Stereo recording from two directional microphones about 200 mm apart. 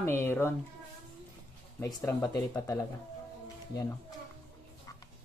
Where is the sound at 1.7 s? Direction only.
15° left (ahead or behind).